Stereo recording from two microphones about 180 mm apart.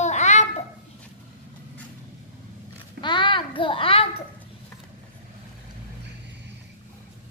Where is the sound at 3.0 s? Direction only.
25° left (ahead or behind).